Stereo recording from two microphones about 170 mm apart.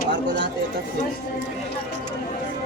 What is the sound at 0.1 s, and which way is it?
Speech, 80° right.